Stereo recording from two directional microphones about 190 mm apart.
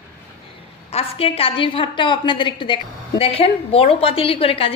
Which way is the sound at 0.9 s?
30° left (ahead or behind).